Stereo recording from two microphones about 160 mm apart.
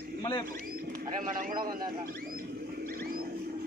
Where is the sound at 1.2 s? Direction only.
60° right (ahead or behind).